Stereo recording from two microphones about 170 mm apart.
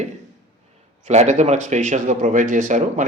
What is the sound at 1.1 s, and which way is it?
Speech, 40° right (ahead or behind).